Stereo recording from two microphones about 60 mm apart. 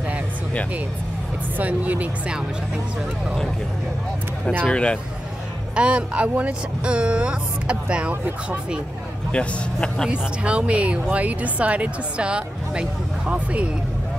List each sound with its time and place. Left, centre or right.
1.6 s a woman's voice: right
4.6 s a man's voice: centre
5.8 s a woman's voice: right
9.3 s a man's voice: centre
10.0 s a woman's voice: centre